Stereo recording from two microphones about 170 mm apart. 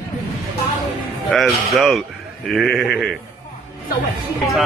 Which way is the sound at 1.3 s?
Centre (ahead or behind).